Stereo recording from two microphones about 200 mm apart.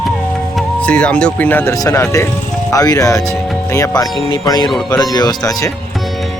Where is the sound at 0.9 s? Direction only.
5° left (ahead or behind).